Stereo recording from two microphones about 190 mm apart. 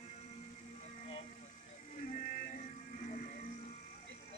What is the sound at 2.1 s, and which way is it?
Music, 40° left (ahead or behind).